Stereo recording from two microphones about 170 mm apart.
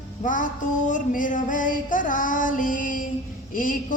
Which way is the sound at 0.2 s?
50° left (ahead or behind).